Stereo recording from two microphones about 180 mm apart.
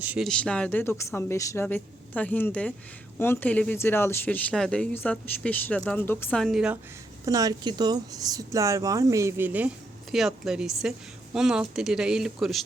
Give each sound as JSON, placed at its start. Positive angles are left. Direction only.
{"t": 0.0, "sound": "speech", "side_deg": -10}
{"t": 0.3, "sound": "speech", "side_deg": 5}
{"t": 7.3, "sound": "speech", "side_deg": -20}